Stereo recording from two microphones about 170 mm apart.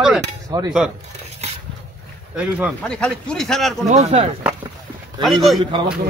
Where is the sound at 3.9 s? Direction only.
40° right (ahead or behind).